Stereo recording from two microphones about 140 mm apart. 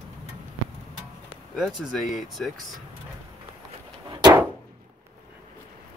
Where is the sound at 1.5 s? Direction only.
Centre (ahead or behind).